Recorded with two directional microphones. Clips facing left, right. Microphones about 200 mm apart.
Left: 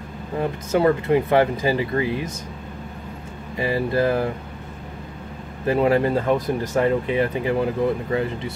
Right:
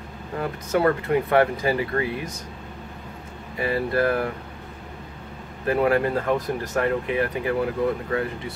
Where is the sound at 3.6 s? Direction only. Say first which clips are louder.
Left 2 dB; 20° left (ahead or behind).